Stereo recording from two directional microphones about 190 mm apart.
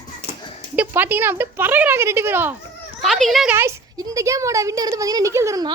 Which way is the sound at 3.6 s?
15° right (ahead or behind).